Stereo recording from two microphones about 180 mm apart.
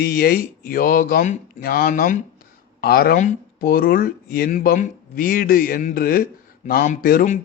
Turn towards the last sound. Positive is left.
turn(degrees=55)  # may be behind; listen again after turning